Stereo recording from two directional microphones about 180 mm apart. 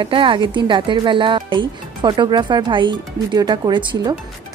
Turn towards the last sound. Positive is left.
turn(degrees=-25)  # may be behind; listen again after turning